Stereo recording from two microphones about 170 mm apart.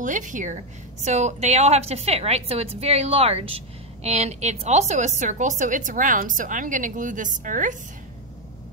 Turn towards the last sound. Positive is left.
turn(degrees=-50)  # may be behind; listen again after turning